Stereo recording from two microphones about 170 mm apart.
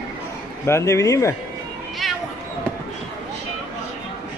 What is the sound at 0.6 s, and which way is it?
Speech, 15° left (ahead or behind).